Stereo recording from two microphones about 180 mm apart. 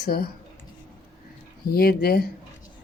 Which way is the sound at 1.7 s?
60° left (ahead or behind).